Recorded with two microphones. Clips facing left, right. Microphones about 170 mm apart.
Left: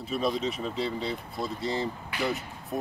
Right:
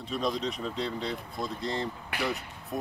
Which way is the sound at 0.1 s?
5° left (ahead or behind).